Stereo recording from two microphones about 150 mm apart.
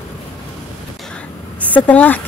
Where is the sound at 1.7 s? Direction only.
10° left (ahead or behind).